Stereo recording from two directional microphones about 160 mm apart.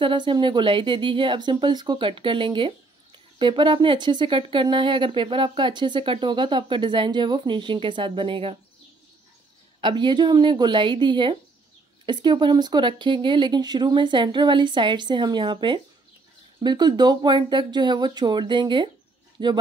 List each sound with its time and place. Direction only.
0.0 s speech: 30° right (ahead or behind)
9.8 s speech: 30° right (ahead or behind)